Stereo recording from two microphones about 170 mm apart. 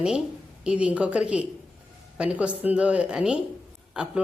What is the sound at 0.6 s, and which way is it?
A woman's voice, 5° right (ahead or behind).